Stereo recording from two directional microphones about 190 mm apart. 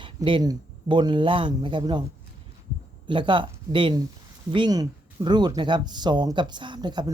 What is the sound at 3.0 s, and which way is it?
Speech, 25° right (ahead or behind).